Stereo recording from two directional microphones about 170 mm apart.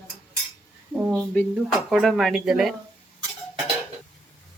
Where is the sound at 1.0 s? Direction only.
5° right (ahead or behind).